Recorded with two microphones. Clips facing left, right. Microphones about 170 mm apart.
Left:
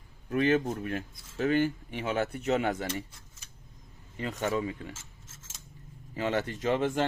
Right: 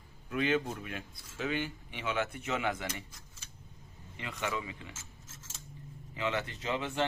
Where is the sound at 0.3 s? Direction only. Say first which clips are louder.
Left 5 dB; 45° left (ahead or behind).